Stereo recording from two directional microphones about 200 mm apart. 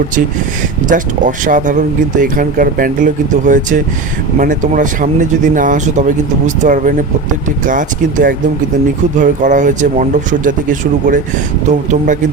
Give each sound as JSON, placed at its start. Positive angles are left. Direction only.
{"t": 0.9, "sound": "speech", "side_deg": -40}